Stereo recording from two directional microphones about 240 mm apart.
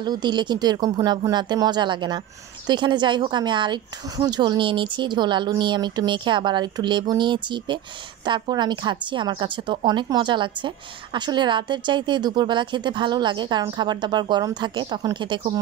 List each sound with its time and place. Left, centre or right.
0.0 s speech: centre